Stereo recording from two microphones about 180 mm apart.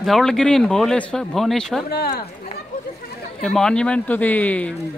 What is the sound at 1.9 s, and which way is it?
Speech, 60° left (ahead or behind).